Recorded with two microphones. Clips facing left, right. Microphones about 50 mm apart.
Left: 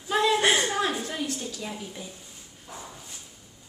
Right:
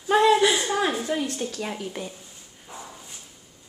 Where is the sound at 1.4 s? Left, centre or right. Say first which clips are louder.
Right 5 dB; right.